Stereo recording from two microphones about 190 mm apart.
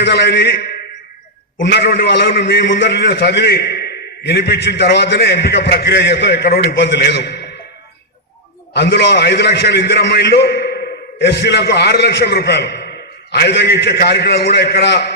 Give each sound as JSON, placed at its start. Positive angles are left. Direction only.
{"t": 0.0, "sound": "a man's voice", "side_deg": 65}
{"t": 8.7, "sound": "a man's voice", "side_deg": 60}